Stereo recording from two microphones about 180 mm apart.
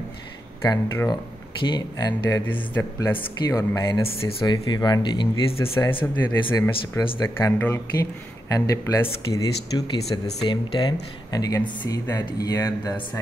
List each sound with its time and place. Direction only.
0.6 s speech: 15° left (ahead or behind)
5.6 s speech: 15° left (ahead or behind)
6.2 s speech: 25° left (ahead or behind)
7.2 s speech: 10° left (ahead or behind)